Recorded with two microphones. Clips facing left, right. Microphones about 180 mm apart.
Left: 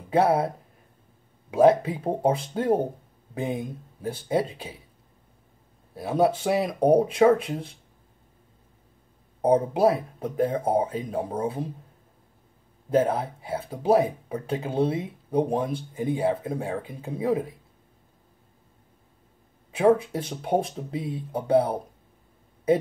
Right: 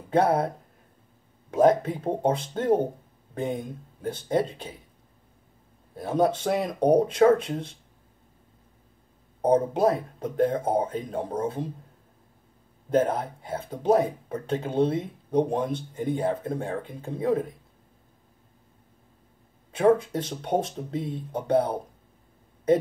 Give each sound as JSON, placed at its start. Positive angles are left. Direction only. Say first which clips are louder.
{"t": 0.1, "sound": "speech", "louder": "left 1 dB", "side_deg": 5}
{"t": 1.5, "sound": "speech", "louder": "left 2 dB", "side_deg": 10}
{"t": 5.9, "sound": "speech", "louder": "left 1 dB", "side_deg": 5}
{"t": 9.4, "sound": "speech", "louder": "left 1 dB", "side_deg": 10}
{"t": 12.9, "sound": "speech", "louder": "left 1 dB", "side_deg": 5}
{"t": 19.8, "sound": "speech", "louder": "even", "side_deg": 5}